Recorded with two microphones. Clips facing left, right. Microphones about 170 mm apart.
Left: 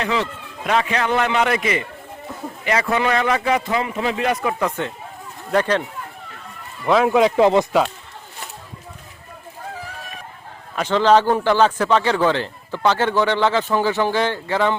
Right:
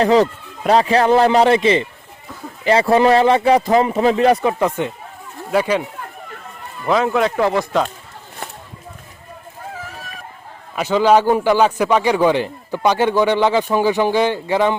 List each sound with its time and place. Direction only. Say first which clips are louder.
0.0 s speech: right 9 dB; 35° right (ahead or behind)
4.8 s a man's voice: right 3 dB; 15° right (ahead or behind)
6.8 s speech: left 1 dB; centre (ahead or behind)
7.1 s speech: left 3 dB; 15° left (ahead or behind)
10.8 s a man's voice: right 2 dB; 10° right (ahead or behind)